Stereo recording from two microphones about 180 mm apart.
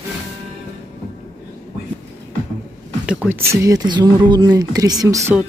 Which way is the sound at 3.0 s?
5° right (ahead or behind).